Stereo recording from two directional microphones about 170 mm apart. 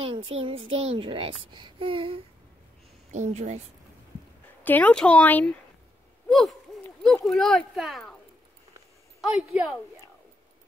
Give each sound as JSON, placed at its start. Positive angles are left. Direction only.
{"t": 0.0, "sound": "a child's voice", "side_deg": -30}
{"t": 3.1, "sound": "a child's voice", "side_deg": -40}
{"t": 4.6, "sound": "speech", "side_deg": 10}
{"t": 6.2, "sound": "hoot", "side_deg": 0}
{"t": 7.2, "sound": "speech", "side_deg": 0}
{"t": 9.3, "sound": "speech", "side_deg": -5}